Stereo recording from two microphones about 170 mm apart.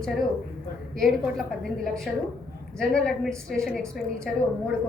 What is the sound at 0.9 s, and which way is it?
A woman's voice, centre (ahead or behind).